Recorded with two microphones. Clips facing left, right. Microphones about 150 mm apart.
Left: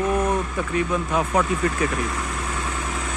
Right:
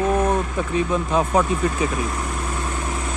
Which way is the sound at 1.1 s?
25° right (ahead or behind).